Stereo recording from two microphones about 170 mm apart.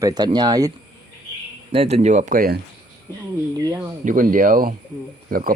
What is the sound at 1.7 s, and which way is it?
Speech, 35° right (ahead or behind).